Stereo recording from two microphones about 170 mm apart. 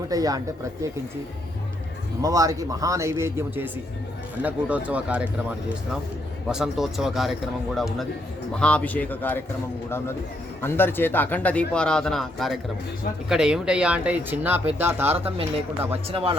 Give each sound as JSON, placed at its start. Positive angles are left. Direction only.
{"t": 0.1, "sound": "speech", "side_deg": -20}
{"t": 2.2, "sound": "speech", "side_deg": -20}
{"t": 10.6, "sound": "speech", "side_deg": 15}
{"t": 15.9, "sound": "speech", "side_deg": -35}